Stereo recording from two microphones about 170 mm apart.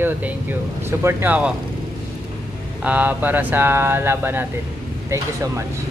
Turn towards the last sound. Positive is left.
turn(degrees=-15)  # may be behind; listen again after turning